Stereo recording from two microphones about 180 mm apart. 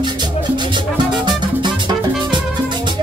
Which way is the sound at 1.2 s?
25° right (ahead or behind).